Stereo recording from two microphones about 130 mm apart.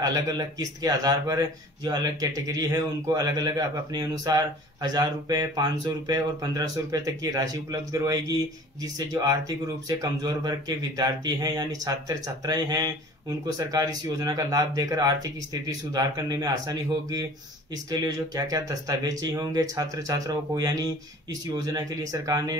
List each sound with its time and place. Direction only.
0.0 s speech: 30° right (ahead or behind)